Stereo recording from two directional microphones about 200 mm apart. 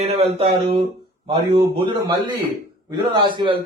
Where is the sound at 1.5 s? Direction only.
20° right (ahead or behind).